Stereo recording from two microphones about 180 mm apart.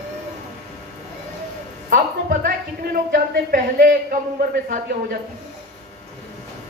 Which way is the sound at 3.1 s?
55° right (ahead or behind).